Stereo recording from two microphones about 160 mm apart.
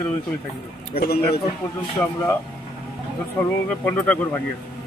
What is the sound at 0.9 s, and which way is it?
Speech, 70° left (ahead or behind).